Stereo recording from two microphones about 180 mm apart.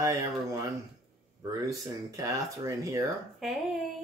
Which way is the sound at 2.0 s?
20° right (ahead or behind).